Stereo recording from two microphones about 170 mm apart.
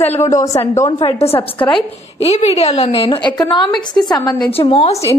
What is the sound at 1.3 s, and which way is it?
Speech, 10° left (ahead or behind).